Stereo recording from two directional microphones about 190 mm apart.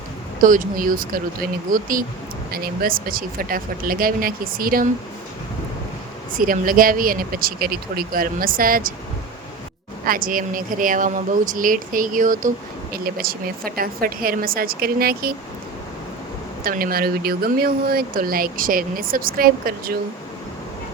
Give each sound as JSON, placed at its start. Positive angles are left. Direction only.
{"t": 0.4, "sound": "speech", "side_deg": -45}
{"t": 6.3, "sound": "speech", "side_deg": -45}
{"t": 10.1, "sound": "speech", "side_deg": -45}
{"t": 16.6, "sound": "speech", "side_deg": -50}